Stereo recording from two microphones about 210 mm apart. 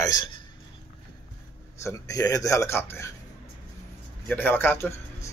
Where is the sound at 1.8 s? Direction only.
15° left (ahead or behind).